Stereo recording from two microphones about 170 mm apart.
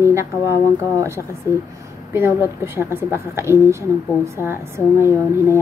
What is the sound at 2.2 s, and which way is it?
A woman's voice, 15° right (ahead or behind).